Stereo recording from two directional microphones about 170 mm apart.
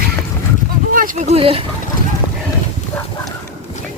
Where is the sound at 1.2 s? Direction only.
35° right (ahead or behind).